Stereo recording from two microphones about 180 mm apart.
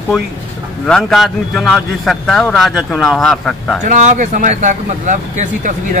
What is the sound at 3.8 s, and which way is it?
Speech, 40° right (ahead or behind).